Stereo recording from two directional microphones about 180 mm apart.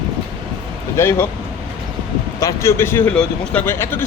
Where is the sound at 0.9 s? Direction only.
15° left (ahead or behind).